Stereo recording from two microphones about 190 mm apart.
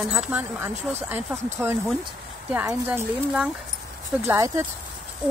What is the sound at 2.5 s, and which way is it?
Speech, 10° right (ahead or behind).